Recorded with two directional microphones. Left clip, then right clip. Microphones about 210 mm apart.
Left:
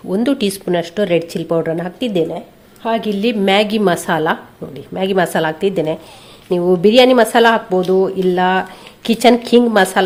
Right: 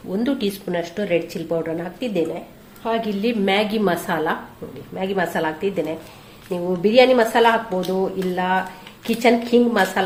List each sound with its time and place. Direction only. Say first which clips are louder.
0.1 s speech: left 6 dB; 45° left (ahead or behind)